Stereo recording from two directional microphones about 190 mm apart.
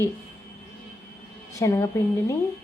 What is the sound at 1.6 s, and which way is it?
Speech, 15° left (ahead or behind).